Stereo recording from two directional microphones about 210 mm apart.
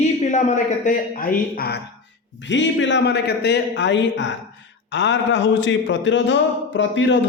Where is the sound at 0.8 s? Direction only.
40° left (ahead or behind).